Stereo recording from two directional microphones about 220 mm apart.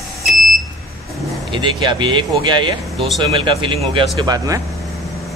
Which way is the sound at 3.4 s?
25° right (ahead or behind).